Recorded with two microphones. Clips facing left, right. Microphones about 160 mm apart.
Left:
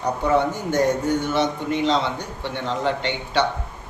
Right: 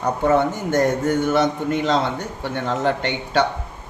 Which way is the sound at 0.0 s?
50° right (ahead or behind).